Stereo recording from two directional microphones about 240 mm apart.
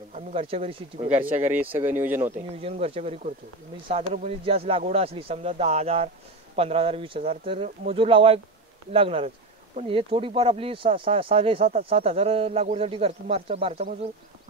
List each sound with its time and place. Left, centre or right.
0.1 s speech: right
1.1 s speech: centre
2.3 s speech: right